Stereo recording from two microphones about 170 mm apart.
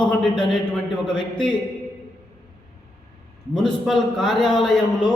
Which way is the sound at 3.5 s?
5° left (ahead or behind).